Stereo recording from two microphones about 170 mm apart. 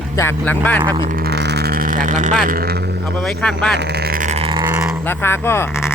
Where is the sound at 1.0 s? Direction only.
60° right (ahead or behind).